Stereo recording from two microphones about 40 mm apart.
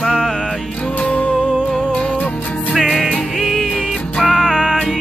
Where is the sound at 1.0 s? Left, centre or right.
Left.